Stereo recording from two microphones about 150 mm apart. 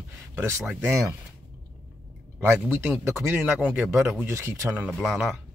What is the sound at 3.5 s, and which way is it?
Speech, 10° right (ahead or behind).